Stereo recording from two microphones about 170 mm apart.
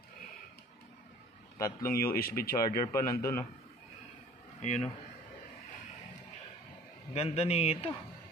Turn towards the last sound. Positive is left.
turn(degrees=35)  # may be behind; listen again after turning